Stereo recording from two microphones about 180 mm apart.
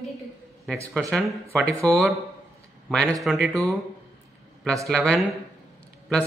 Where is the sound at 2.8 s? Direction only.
5° left (ahead or behind).